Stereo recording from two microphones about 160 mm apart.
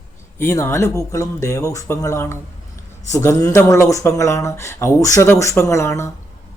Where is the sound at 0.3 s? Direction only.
15° left (ahead or behind).